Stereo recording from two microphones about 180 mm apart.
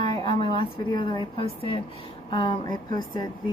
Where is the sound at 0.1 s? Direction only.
25° left (ahead or behind).